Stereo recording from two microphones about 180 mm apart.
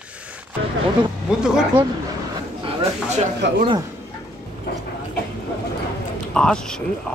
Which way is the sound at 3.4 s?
75° right (ahead or behind).